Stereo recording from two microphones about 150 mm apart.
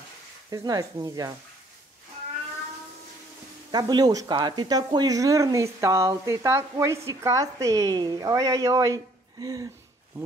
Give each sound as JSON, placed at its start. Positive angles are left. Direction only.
{"t": 0.5, "sound": "speech", "side_deg": -25}
{"t": 3.7, "sound": "speech", "side_deg": -30}